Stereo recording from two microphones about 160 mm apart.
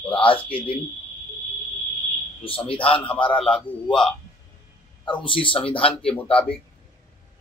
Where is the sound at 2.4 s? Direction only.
35° left (ahead or behind).